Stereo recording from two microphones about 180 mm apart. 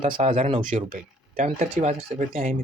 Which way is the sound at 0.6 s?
45° right (ahead or behind).